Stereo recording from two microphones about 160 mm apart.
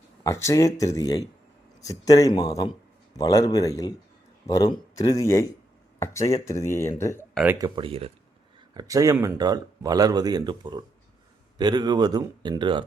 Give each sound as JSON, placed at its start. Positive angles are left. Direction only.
{"t": 0.3, "sound": "speech", "side_deg": 20}
{"t": 7.6, "sound": "speech", "side_deg": -35}
{"t": 8.7, "sound": "speech", "side_deg": -25}